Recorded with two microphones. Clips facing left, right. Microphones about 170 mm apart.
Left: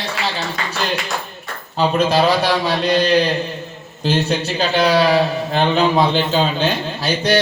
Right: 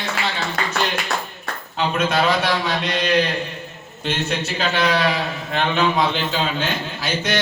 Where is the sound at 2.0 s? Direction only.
35° left (ahead or behind).